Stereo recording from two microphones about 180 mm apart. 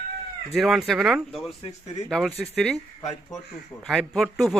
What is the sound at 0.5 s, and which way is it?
Speech, centre (ahead or behind).